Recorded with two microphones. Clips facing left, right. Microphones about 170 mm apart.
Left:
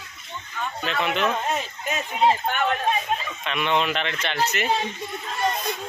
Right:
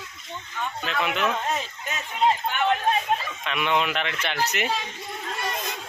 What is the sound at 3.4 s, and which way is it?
Speech, 5° right (ahead or behind).